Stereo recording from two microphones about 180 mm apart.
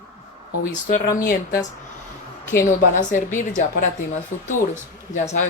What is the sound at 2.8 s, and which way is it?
Speech, 45° left (ahead or behind).